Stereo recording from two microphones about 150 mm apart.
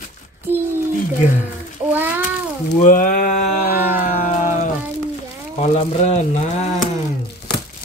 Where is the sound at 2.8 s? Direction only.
65° left (ahead or behind).